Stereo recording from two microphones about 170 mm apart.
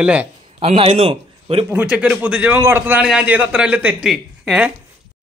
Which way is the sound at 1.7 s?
10° right (ahead or behind).